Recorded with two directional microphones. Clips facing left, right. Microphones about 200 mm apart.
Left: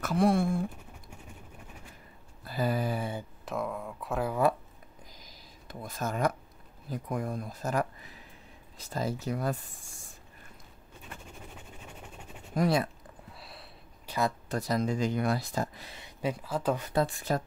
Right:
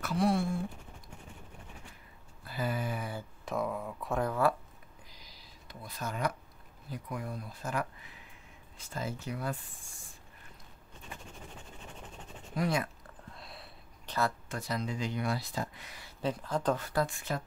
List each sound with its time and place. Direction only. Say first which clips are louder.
0.0 s speech: left 4 dB; 50° left (ahead or behind)
2.4 s speech: left 5 dB; 40° left (ahead or behind)
3.4 s speech: right 1 dB; centre (ahead or behind)
5.1 s a sound: left 3 dB; 45° left (ahead or behind)
6.9 s speech: left 6 dB; 45° left (ahead or behind)
11.8 s vehicle: left 1 dB; 10° left (ahead or behind)
12.5 s speech: left 5 dB; 35° left (ahead or behind)
13.3 s a sound: right 1 dB; centre (ahead or behind)
14.5 s speech: left 6 dB; 40° left (ahead or behind)
16.0 s speech: left 1 dB; 10° left (ahead or behind)
17.0 s speech: left 4 dB; 35° left (ahead or behind)